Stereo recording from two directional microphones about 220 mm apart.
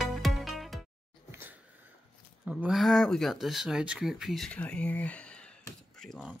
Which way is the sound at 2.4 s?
5° right (ahead or behind).